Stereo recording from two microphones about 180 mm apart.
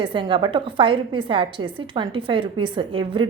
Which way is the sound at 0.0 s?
25° right (ahead or behind).